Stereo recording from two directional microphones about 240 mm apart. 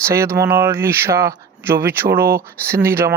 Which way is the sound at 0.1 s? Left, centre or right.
Centre.